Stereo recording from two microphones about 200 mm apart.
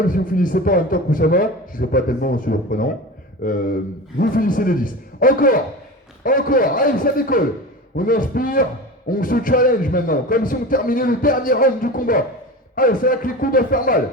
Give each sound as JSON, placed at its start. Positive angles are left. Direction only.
{"t": 0.1, "sound": "a man's voice", "side_deg": 45}